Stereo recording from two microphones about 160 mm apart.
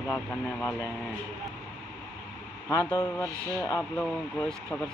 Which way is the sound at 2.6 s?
20° left (ahead or behind).